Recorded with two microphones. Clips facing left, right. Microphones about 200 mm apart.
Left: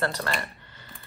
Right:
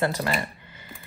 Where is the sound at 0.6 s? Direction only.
15° right (ahead or behind).